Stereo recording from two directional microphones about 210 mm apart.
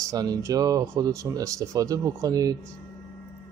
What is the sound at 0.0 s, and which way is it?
Mantra, 15° right (ahead or behind).